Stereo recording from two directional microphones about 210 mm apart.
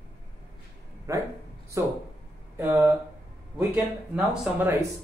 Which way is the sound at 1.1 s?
15° right (ahead or behind).